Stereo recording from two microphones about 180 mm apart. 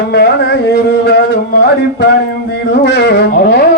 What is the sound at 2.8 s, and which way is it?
Speech, 85° left.